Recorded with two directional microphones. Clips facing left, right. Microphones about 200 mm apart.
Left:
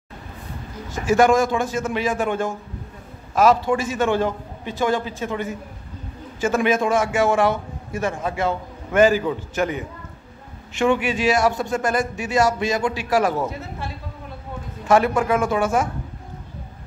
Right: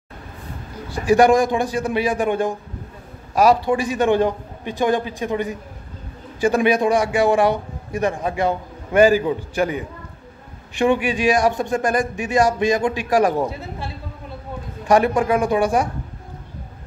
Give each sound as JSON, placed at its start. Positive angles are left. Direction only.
{"t": 0.8, "sound": "a man's voice", "side_deg": -15}
{"t": 14.9, "sound": "a man's voice", "side_deg": -15}